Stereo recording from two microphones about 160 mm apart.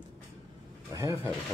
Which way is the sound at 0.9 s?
25° right (ahead or behind).